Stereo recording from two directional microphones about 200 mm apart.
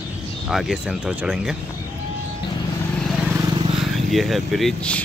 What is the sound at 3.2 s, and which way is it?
Vehicle, 15° right (ahead or behind).